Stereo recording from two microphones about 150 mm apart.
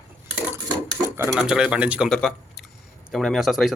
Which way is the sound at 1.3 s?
5° right (ahead or behind).